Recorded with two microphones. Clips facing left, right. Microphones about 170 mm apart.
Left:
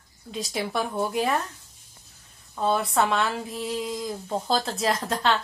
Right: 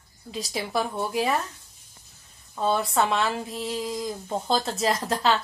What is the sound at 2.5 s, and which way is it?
Speech, centre (ahead or behind).